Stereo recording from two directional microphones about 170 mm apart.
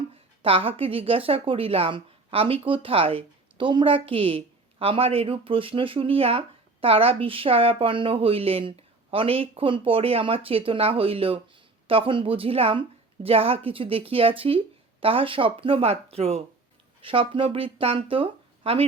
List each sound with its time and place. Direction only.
0.4 s a woman's voice: 35° right (ahead or behind)